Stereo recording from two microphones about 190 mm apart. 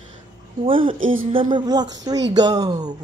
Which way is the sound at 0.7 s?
25° right (ahead or behind).